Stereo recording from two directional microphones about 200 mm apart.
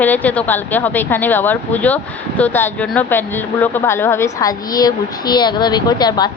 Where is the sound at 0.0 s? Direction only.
10° left (ahead or behind).